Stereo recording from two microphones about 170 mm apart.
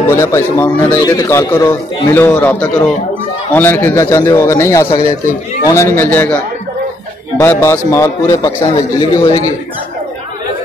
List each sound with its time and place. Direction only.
0.1 s a man's voice: 15° left (ahead or behind)
7.3 s a man's voice: 15° left (ahead or behind)